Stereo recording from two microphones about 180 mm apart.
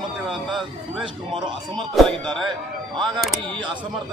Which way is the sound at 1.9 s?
Centre (ahead or behind).